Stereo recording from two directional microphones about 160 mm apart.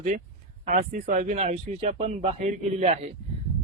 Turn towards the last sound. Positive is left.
turn(degrees=-50)  # may be behind; listen again after turning